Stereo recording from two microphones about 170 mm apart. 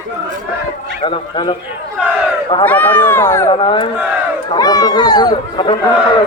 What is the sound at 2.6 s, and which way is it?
Speech, 10° left (ahead or behind).